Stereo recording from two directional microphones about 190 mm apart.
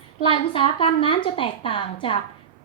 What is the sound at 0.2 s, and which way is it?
A woman's voice, 25° left (ahead or behind).